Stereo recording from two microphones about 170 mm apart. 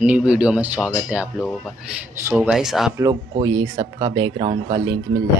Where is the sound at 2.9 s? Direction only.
20° right (ahead or behind).